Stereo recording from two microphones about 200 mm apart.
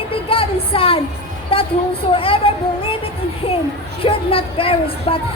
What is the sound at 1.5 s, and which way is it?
Speech, 25° left (ahead or behind).